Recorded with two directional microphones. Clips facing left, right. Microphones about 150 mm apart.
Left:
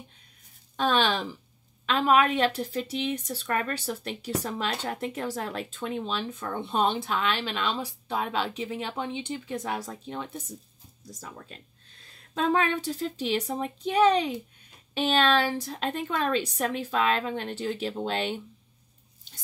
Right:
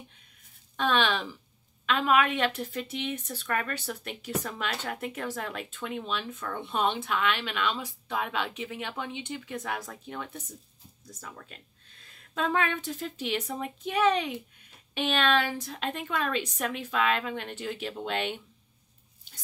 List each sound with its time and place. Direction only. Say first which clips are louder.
0.7 s speech: left 2 dB; 35° left (ahead or behind)